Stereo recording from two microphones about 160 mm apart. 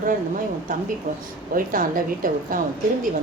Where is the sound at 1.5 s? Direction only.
60° right (ahead or behind).